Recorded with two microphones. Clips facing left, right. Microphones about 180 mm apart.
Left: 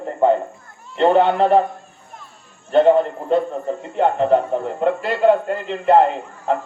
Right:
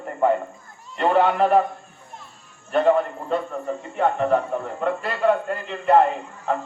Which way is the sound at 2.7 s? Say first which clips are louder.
Left 5 dB; 25° left (ahead or behind).